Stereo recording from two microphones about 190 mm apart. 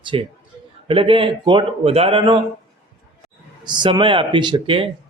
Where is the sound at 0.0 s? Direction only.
25° right (ahead or behind).